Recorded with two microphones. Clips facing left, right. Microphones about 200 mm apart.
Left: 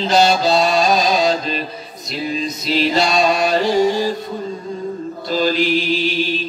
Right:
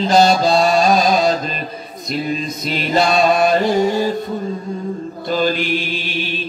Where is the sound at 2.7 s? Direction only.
50° right (ahead or behind).